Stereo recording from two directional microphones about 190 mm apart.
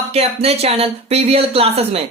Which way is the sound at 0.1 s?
30° right (ahead or behind).